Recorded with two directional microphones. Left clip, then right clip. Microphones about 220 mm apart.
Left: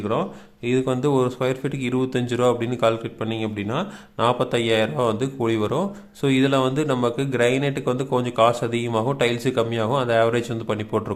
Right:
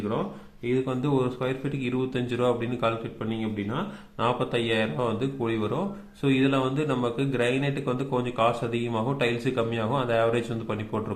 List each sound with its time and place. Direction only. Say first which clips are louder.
0.6 s speech: left 6 dB; 40° left (ahead or behind)